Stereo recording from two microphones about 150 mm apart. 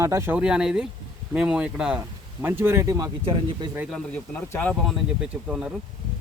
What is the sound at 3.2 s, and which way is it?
Speech, 35° right (ahead or behind).